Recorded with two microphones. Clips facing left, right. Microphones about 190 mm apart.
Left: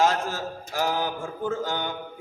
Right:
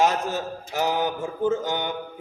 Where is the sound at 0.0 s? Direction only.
20° right (ahead or behind).